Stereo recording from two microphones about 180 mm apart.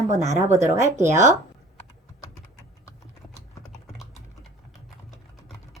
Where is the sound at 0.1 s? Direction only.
40° right (ahead or behind).